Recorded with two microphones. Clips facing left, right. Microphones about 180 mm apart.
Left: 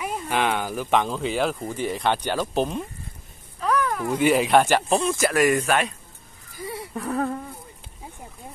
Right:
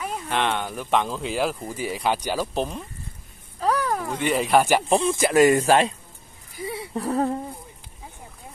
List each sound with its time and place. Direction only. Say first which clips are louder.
0.0 s speech: left 1 dB; 5° left (ahead or behind)
3.5 s a sound: right 1 dB; 35° right (ahead or behind)
4.2 s speech: left 4 dB; centre (ahead or behind)
4.6 s speech: even; 10° right (ahead or behind)
5.0 s speech: right 3 dB; 25° right (ahead or behind)